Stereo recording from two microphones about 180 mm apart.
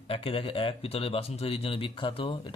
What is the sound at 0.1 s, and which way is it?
Speech, 30° left (ahead or behind).